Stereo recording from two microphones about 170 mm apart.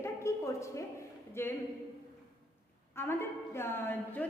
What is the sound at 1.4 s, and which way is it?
Speech, 15° left (ahead or behind).